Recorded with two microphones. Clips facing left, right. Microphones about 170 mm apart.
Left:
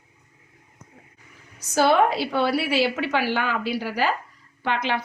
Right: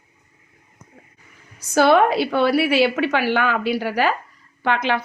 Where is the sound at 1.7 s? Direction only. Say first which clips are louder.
Right 4 dB; 65° right (ahead or behind).